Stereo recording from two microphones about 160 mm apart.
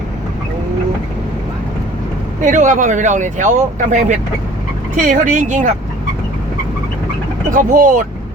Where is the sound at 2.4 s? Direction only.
55° right (ahead or behind).